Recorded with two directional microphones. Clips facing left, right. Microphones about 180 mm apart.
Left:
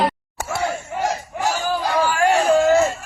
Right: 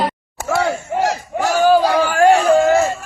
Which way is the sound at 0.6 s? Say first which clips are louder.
Right 5 dB; 85° right.